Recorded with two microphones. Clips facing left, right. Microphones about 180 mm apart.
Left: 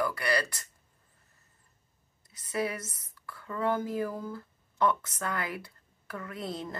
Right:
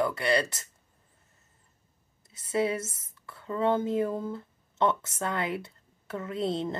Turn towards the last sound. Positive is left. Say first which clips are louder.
# right 7 dB
turn(degrees=-25)  # may be behind; listen again after turning